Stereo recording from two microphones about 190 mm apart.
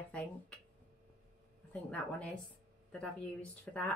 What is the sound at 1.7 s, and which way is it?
A woman's voice, 5° left (ahead or behind).